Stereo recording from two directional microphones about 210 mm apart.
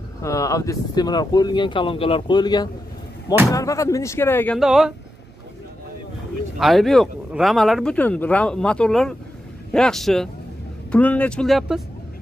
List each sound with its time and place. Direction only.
0.2 s speech: 15° left (ahead or behind)
4.6 s speech: centre (ahead or behind)
6.6 s speech: centre (ahead or behind)